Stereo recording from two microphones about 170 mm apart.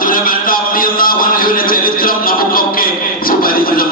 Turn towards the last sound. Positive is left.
turn(degrees=60)  # may be behind; listen again after turning